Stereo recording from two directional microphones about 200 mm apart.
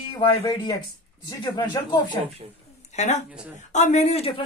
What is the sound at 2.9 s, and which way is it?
Speech, 35° left (ahead or behind).